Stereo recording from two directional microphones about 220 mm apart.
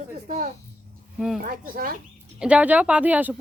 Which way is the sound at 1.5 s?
40° right (ahead or behind).